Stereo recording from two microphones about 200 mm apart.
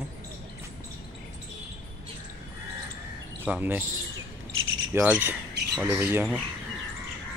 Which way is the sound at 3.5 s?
10° right (ahead or behind).